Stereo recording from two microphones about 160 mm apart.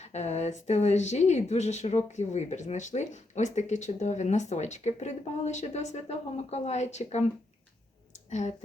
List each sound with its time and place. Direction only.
0.0 s speech: 45° left (ahead or behind)
8.3 s speech: 45° left (ahead or behind)